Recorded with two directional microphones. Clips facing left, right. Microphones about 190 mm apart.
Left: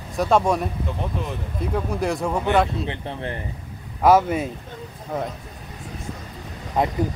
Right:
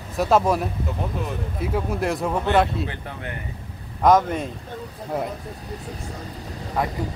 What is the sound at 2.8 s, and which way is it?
Speech, 30° left (ahead or behind).